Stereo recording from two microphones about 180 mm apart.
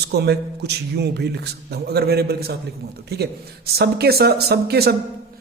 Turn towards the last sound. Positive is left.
turn(degrees=-60)  # may be behind; listen again after turning